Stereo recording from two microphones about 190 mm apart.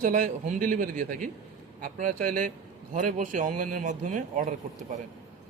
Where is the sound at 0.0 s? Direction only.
45° right (ahead or behind).